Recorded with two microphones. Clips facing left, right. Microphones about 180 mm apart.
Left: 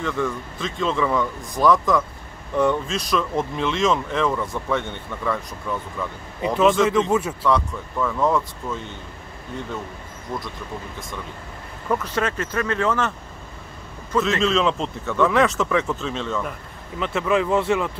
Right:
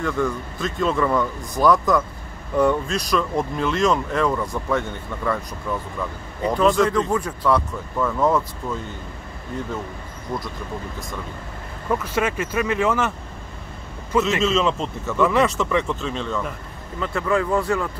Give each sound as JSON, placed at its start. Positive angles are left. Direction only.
{"t": 0.0, "sound": "speech", "side_deg": 0}
{"t": 11.9, "sound": "speech", "side_deg": -10}
{"t": 14.4, "sound": "speech", "side_deg": 0}
{"t": 17.0, "sound": "speech", "side_deg": 15}